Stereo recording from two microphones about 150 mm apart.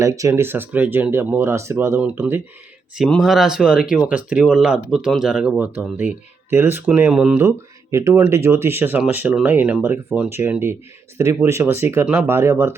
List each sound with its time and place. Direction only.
0.0 s speech: 20° right (ahead or behind)
2.9 s speech: centre (ahead or behind)
7.4 s speech: 20° right (ahead or behind)